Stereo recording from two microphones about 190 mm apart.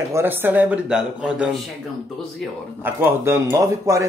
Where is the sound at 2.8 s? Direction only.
10° right (ahead or behind).